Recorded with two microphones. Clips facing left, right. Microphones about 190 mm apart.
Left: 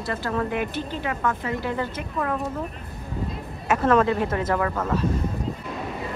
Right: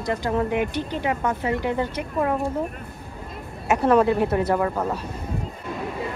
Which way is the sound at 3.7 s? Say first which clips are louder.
Right 2 dB; 10° right (ahead or behind).